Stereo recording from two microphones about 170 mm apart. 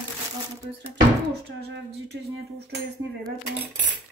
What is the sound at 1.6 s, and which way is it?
Cutlery, 75° right (ahead or behind).